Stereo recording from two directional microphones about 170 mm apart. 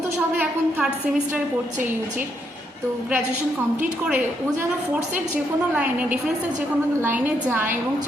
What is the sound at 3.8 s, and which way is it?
A woman's voice, 10° right (ahead or behind).